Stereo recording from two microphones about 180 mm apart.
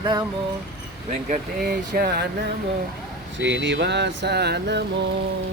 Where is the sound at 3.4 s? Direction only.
80° right; by 4.8 s 65° right (ahead or behind).